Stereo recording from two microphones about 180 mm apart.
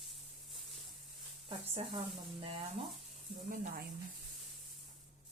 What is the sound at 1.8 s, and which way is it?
Speech, 30° right (ahead or behind).